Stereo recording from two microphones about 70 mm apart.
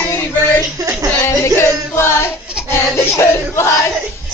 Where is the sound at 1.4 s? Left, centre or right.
Left.